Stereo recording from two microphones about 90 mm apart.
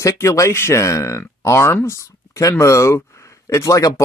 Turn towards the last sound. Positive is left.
turn(degrees=35)  # may be behind; listen again after turning